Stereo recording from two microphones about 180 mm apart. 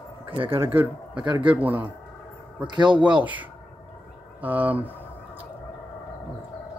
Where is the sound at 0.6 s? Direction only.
10° right (ahead or behind).